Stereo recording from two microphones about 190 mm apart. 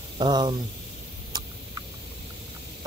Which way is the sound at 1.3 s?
20° right (ahead or behind).